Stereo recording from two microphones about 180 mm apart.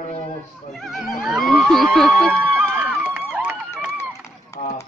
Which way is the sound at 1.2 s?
Centre (ahead or behind).